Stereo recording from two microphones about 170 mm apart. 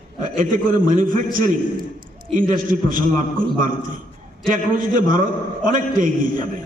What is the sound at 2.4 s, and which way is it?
A man's voice, 50° right (ahead or behind).